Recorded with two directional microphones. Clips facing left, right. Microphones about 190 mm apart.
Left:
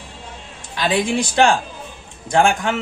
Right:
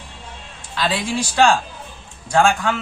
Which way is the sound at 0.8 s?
20° left (ahead or behind).